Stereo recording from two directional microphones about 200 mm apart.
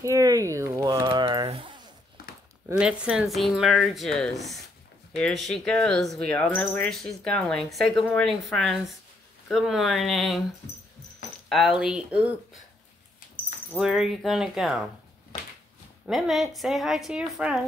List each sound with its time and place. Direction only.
0.0 s a sound: 15° right (ahead or behind)
2.8 s speech: 5° right (ahead or behind)
11.4 s speech: centre (ahead or behind)
13.7 s speech: centre (ahead or behind)
16.1 s speech: centre (ahead or behind)